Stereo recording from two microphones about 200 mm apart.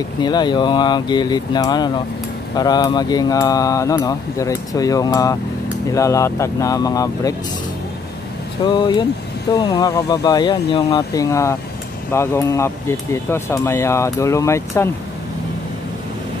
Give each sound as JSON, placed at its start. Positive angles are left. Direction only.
{"t": 0.2, "sound": "speech", "side_deg": 20}
{"t": 8.6, "sound": "speech", "side_deg": 20}